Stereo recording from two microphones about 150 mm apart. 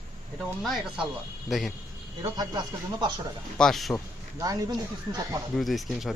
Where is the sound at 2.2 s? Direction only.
30° right (ahead or behind).